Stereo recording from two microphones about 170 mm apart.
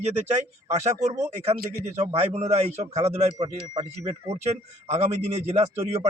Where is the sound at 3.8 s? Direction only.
20° right (ahead or behind).